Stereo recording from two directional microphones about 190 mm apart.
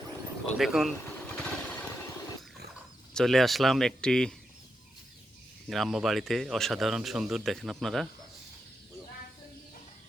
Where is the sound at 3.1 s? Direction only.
Centre (ahead or behind).